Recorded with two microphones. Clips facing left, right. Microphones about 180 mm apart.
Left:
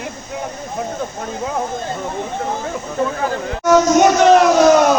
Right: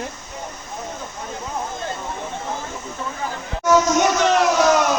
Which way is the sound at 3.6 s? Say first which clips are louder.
Left 5 dB; 50° left (ahead or behind).